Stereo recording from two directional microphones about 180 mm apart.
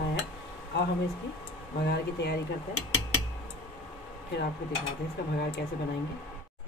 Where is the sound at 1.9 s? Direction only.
70° left (ahead or behind).